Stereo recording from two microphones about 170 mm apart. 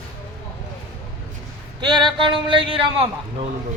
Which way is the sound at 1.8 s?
25° right (ahead or behind).